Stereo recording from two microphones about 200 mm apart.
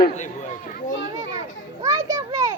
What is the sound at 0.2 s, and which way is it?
Speech, 40° left (ahead or behind).